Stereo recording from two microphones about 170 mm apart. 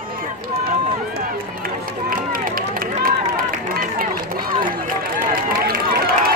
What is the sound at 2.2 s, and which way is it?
Run, 55° right (ahead or behind).